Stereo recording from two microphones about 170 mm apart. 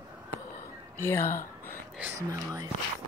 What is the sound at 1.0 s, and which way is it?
Speech, 15° left (ahead or behind).